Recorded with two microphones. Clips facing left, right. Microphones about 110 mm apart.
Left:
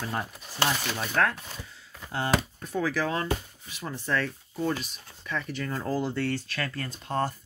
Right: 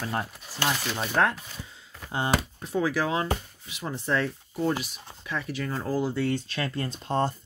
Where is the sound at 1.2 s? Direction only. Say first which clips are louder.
Right 2 dB; 25° right (ahead or behind).